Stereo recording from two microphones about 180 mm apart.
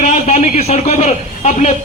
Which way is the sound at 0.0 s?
40° left (ahead or behind).